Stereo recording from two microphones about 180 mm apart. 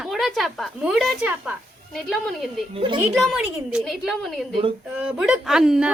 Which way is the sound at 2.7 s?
25° right (ahead or behind).